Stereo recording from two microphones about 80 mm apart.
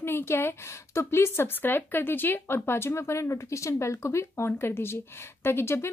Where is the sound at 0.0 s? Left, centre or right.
Left.